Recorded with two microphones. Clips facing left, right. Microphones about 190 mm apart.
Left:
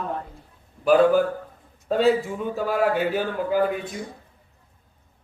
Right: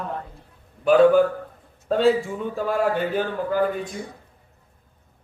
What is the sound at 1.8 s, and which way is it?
A man's voice, 5° left (ahead or behind).